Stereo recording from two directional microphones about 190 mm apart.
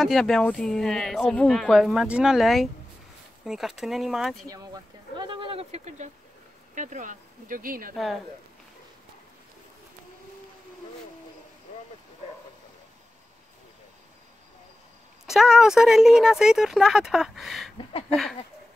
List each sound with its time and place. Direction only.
0.0 s speech: centre (ahead or behind)
5.1 s a sound: 25° right (ahead or behind)
6.7 s speech: 40° right (ahead or behind)
7.9 s speech: centre (ahead or behind)
15.2 s speech: centre (ahead or behind)